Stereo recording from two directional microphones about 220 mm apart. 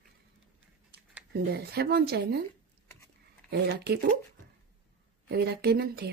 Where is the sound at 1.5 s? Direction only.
45° right (ahead or behind).